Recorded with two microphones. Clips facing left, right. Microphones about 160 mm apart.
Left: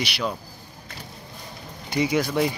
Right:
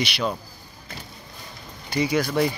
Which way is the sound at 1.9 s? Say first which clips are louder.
Even; 20° left (ahead or behind).